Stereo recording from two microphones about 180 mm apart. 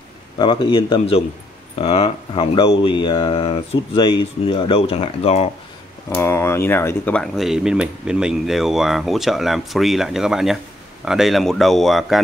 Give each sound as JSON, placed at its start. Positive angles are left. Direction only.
{"t": 0.4, "sound": "speech", "side_deg": 25}
{"t": 6.0, "sound": "speech", "side_deg": 15}